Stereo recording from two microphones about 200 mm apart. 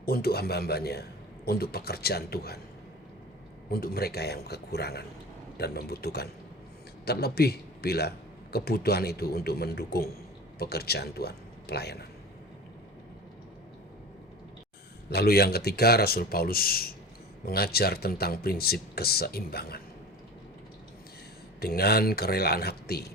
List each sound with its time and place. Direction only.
0.0 s speech: 50° left (ahead or behind)
3.7 s a man's voice: 50° left (ahead or behind)
15.1 s speech: 50° left (ahead or behind)
21.6 s speech: 50° left (ahead or behind)